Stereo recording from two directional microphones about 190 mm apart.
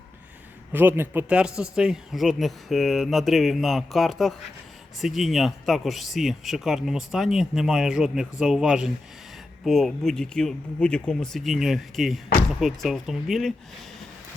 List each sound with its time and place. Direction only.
0.7 s speech: 10° right (ahead or behind)